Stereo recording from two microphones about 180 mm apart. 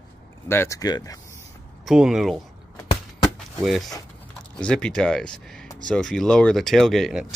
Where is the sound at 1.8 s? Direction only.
Centre (ahead or behind).